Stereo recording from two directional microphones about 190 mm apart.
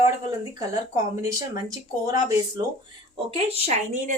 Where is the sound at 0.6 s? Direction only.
15° right (ahead or behind).